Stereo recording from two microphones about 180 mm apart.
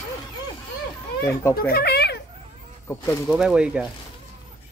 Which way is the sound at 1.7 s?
60° left (ahead or behind).